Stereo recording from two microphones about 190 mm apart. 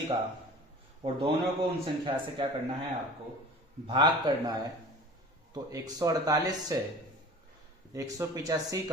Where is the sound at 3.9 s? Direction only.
25° right (ahead or behind).